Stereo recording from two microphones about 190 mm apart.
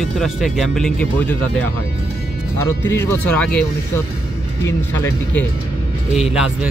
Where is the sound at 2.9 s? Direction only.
10° left (ahead or behind).